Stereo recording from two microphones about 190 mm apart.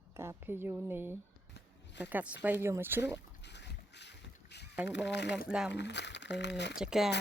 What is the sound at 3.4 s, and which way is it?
Boat, 65° left (ahead or behind).